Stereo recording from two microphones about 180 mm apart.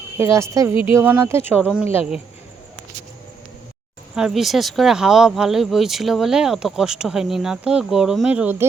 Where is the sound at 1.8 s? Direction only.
35° left (ahead or behind).